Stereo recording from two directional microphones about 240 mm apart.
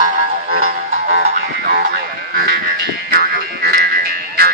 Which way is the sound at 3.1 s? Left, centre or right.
Right.